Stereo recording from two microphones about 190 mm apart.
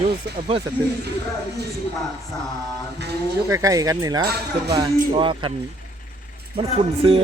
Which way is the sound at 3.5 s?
15° right (ahead or behind).